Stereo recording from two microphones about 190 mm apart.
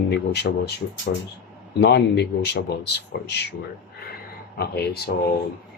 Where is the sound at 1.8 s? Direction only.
60° left (ahead or behind).